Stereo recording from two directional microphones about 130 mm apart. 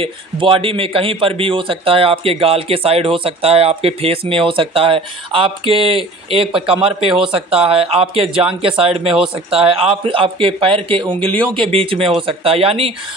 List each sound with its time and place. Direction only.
0.0 s a man's voice: 45° right (ahead or behind)